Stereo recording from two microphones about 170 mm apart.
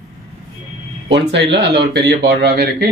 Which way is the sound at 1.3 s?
90° right.